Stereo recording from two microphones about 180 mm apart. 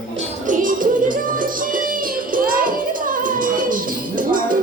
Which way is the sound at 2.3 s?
50° right (ahead or behind).